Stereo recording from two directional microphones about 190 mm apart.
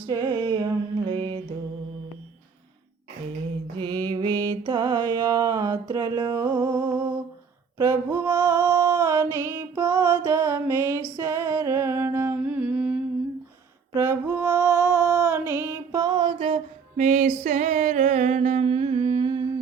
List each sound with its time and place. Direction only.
0.1 s music: 20° right (ahead or behind)
1.0 s mantra: 25° right (ahead or behind)
3.8 s mantra: 25° right (ahead or behind)
5.9 s music: 20° right (ahead or behind)
7.8 s a sound: 15° right (ahead or behind)
10.2 s music: 15° right (ahead or behind)
11.2 s humming: 15° right (ahead or behind)
13.9 s female singing: 10° right (ahead or behind)
17.0 s a sound: 40° right (ahead or behind)